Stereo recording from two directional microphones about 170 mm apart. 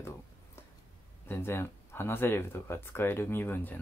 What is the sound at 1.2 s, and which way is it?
Speech, 15° left (ahead or behind).